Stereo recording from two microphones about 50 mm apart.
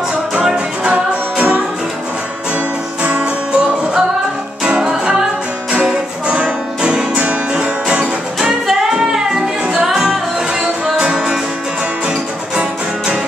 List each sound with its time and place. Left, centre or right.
0.3 s music: centre
3.0 s music: right
8.0 s music: centre
12.1 s music: centre